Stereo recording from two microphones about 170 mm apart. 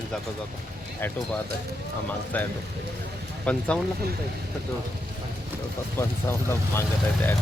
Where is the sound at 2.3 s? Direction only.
10° left (ahead or behind).